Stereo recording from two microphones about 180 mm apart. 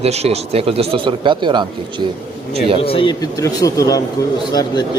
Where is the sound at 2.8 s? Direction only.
30° left (ahead or behind).